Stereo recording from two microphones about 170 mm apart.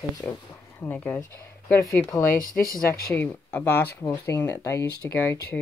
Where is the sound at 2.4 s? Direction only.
60° left (ahead or behind).